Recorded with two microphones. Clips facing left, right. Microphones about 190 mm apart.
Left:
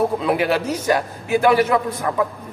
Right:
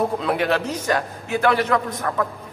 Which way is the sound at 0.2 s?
5° left (ahead or behind).